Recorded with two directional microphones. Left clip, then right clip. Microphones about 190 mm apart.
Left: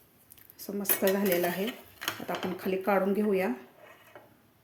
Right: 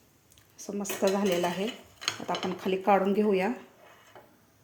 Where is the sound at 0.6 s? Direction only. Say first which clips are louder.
Even; centre (ahead or behind).